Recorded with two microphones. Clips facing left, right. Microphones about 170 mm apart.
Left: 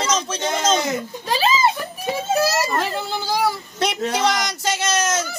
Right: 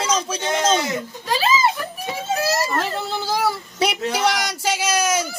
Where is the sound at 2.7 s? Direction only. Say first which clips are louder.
Even; centre (ahead or behind).